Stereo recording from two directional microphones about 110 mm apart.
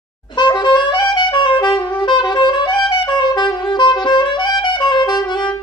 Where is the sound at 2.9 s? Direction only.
45° left (ahead or behind).